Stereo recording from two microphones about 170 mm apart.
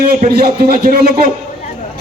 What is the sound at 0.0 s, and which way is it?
A man's voice, 60° right (ahead or behind).